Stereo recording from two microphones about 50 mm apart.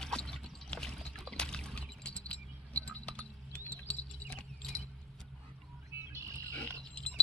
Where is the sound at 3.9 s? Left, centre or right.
Left.